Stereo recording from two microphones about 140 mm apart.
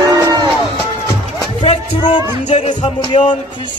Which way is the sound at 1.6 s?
35° left (ahead or behind).